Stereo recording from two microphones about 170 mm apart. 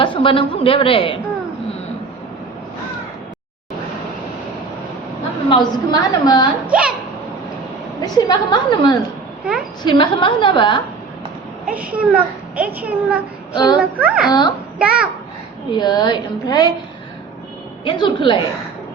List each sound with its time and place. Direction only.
0.0 s a woman's voice: 30° left (ahead or behind)
5.5 s a woman's voice: 25° left (ahead or behind)
6.7 s a child's voice: 5° right (ahead or behind)
8.0 s a woman's voice: 25° left (ahead or behind)
11.7 s a child's voice: 10° right (ahead or behind)
13.5 s speech: 25° left (ahead or behind)
13.7 s a child's voice: 5° right (ahead or behind)
14.3 s a woman's voice: 25° left (ahead or behind)
14.8 s a child's voice: 5° right (ahead or behind)
15.7 s a woman's voice: 25° left (ahead or behind)
17.8 s a woman's voice: 25° left (ahead or behind)